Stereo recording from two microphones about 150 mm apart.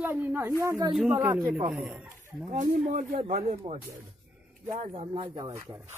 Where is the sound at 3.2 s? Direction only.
45° right (ahead or behind).